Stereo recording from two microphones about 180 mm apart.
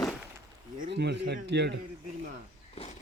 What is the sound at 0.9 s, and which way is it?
Speech, 70° right (ahead or behind).